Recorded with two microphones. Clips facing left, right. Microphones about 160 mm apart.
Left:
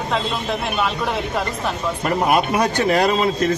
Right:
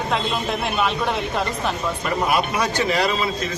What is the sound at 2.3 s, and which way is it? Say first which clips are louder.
A man's voice: left 5 dB; 50° left (ahead or behind).